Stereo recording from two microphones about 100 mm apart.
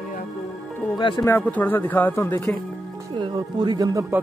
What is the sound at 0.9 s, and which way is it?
Speech, 50° left (ahead or behind).